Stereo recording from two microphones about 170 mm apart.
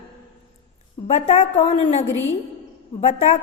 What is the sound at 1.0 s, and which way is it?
A woman's voice, 40° left (ahead or behind).